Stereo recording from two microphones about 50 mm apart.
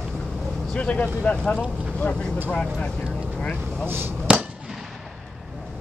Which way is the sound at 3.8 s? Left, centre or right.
Right.